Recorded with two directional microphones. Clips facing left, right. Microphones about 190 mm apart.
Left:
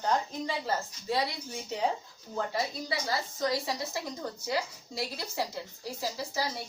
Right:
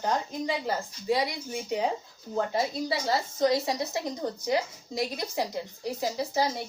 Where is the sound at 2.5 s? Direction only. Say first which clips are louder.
Right 5 dB; 25° right (ahead or behind).